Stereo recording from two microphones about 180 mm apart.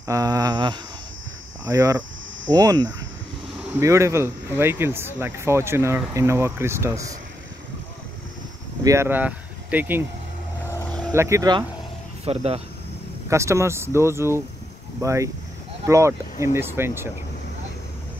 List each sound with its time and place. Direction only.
0.0 s speech: 20° right (ahead or behind)
8.8 s speech: 15° right (ahead or behind)
10.7 s vehicle: 10° left (ahead or behind)
11.1 s speech: 15° right (ahead or behind)
12.3 s speech: 35° right (ahead or behind)
13.3 s speech: 15° right (ahead or behind)